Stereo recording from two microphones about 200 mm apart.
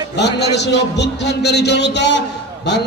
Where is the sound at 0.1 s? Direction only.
60° left (ahead or behind).